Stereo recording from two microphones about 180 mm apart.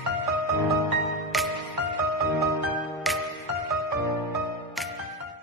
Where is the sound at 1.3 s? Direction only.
Centre (ahead or behind).